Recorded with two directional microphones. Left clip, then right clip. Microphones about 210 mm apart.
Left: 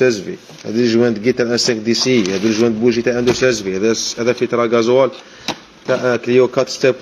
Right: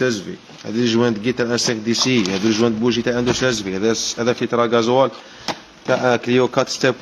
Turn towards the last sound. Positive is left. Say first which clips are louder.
# left 3 dB
turn(degrees=-15)  # may be behind; listen again after turning